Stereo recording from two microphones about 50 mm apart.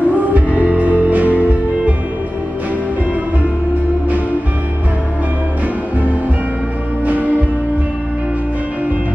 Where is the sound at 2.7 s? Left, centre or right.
Right.